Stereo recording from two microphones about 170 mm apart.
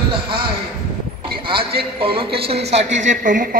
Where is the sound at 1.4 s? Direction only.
30° right (ahead or behind).